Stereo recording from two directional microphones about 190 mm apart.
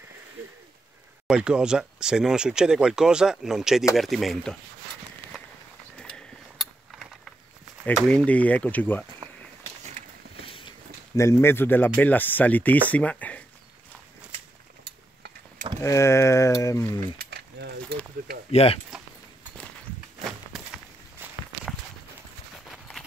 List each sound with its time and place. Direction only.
1.2 s speech: 5° right (ahead or behind)
5.9 s mechanisms: 5° left (ahead or behind)
7.8 s speech: 5° left (ahead or behind)
9.2 s a sound: 20° right (ahead or behind)
10.4 s a sound: 30° left (ahead or behind)
11.1 s speech: 15° left (ahead or behind)
15.8 s speech: 15° left (ahead or behind)
17.2 s mechanisms: 60° right (ahead or behind)
18.5 s speech: 30° left (ahead or behind)
22.7 s clip-clop: centre (ahead or behind)